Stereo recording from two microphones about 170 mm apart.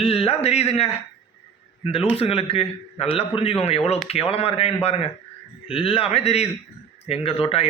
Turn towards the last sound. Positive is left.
turn(degrees=35)  # may be behind; listen again after turning